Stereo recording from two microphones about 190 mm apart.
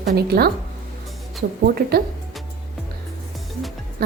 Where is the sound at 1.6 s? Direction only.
55° right (ahead or behind).